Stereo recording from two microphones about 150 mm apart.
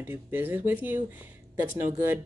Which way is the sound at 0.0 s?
15° right (ahead or behind).